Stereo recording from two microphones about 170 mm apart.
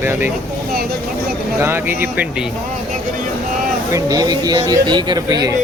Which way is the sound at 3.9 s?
20° right (ahead or behind).